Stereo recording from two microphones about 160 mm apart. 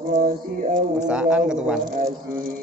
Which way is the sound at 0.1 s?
55° right (ahead or behind).